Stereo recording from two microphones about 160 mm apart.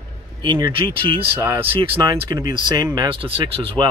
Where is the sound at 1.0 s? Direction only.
30° right (ahead or behind).